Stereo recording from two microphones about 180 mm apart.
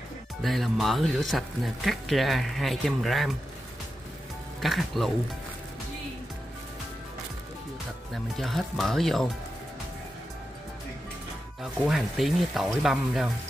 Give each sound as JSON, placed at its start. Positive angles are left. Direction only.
{"t": 0.4, "sound": "speech", "side_deg": 0}
{"t": 4.6, "sound": "speech", "side_deg": 0}
{"t": 8.1, "sound": "speech", "side_deg": 0}
{"t": 11.6, "sound": "speech", "side_deg": 0}